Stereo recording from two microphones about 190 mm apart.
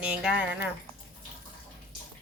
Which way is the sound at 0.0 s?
5° right (ahead or behind).